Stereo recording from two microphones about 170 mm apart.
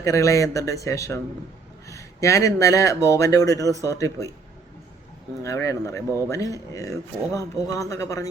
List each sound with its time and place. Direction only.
0.0 s speech: 20° left (ahead or behind)
5.4 s speech: 20° left (ahead or behind)